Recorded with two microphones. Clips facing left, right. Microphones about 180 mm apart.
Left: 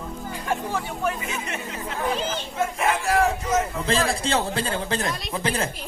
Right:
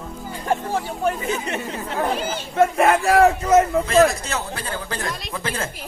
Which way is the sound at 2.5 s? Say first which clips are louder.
Right 9 dB; 65° right (ahead or behind).